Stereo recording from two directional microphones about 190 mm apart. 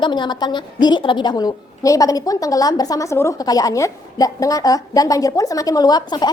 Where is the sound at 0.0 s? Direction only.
25° left (ahead or behind).